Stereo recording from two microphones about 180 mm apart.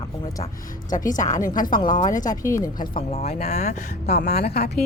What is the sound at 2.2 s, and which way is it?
Speech, 20° left (ahead or behind).